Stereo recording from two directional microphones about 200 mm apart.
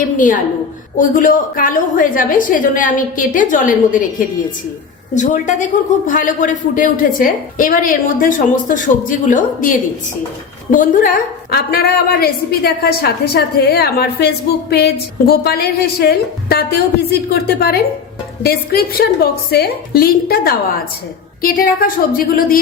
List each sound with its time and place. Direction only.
0.9 s a woman's voice: 40° left (ahead or behind)
5.1 s a woman's voice: 40° left (ahead or behind)